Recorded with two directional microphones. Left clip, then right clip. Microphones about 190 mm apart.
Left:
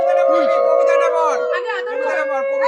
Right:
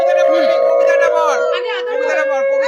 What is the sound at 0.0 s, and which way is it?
Singing bowl, 20° right (ahead or behind).